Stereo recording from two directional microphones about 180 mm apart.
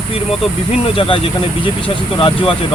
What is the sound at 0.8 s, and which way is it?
Speech, 30° left (ahead or behind).